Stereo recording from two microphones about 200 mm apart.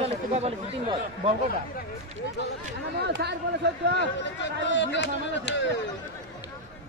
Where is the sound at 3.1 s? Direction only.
55° right (ahead or behind).